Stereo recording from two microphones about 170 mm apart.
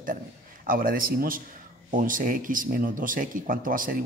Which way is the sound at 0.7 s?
55° right (ahead or behind).